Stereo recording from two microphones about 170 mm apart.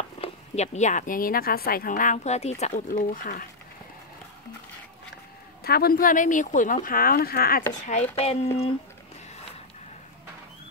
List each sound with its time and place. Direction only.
0.2 s speech: 40° left (ahead or behind)
5.6 s speech: 65° left (ahead or behind)
7.8 s speech: 40° left (ahead or behind)